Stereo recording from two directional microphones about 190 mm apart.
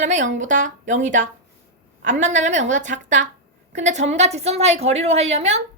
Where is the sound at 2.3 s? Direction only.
40° right (ahead or behind).